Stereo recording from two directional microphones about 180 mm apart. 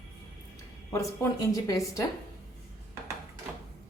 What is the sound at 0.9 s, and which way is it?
A woman's voice, 15° left (ahead or behind).